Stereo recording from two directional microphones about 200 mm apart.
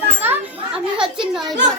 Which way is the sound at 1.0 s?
5° right (ahead or behind).